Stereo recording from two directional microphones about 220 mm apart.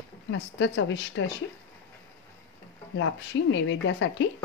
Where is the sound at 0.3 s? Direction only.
55° left (ahead or behind).